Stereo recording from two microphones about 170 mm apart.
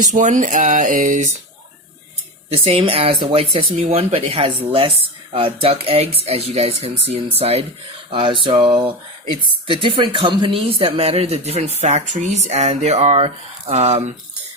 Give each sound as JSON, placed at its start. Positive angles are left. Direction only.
{"t": 0.0, "sound": "speech", "side_deg": -45}
{"t": 2.5, "sound": "speech", "side_deg": -35}